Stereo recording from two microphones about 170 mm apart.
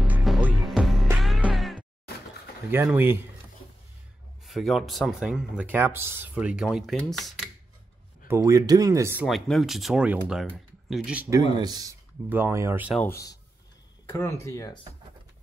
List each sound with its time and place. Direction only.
0.0 s music: 5° right (ahead or behind)
2.7 s speech: 10° right (ahead or behind)
4.5 s speech: centre (ahead or behind)
8.3 s speech: 20° right (ahead or behind)
9.3 s speech: centre (ahead or behind)
11.5 s speech: 25° right (ahead or behind)
13.0 s a man's voice: 20° left (ahead or behind)